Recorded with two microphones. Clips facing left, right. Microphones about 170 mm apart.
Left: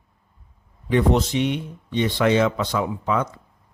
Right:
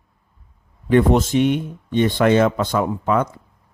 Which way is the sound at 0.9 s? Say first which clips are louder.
Right 4 dB; 50° right (ahead or behind).